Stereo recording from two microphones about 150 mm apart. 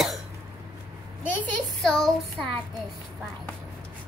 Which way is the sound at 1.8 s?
Centre (ahead or behind).